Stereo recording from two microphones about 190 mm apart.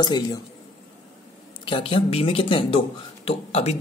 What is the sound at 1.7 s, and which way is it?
Speech, 30° left (ahead or behind).